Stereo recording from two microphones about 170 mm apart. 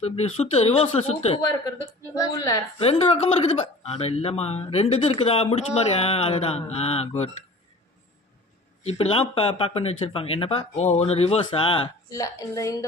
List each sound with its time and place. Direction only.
0.0 s speech: 40° left (ahead or behind)
2.1 s a woman's voice: 20° left (ahead or behind)
2.7 s speech: 35° left (ahead or behind)
8.8 s speech: 35° left (ahead or behind); by 12.8 s 20° left (ahead or behind)